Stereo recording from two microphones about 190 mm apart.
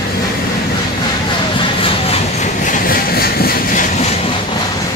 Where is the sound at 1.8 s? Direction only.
30° left (ahead or behind); by 3.8 s 50° left (ahead or behind).